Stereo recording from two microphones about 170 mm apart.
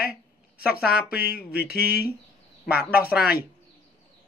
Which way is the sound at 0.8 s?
65° left (ahead or behind).